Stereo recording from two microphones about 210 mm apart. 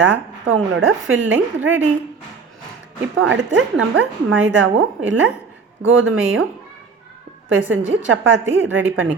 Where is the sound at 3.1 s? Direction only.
65° right (ahead or behind).